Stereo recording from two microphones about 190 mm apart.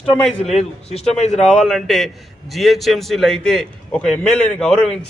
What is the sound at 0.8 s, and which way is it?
Speech, 35° left (ahead or behind).